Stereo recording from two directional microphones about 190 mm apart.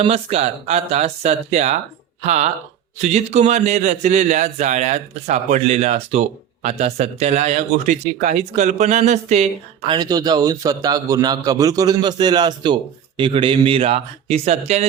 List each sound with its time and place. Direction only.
0.0 s speech: 30° right (ahead or behind)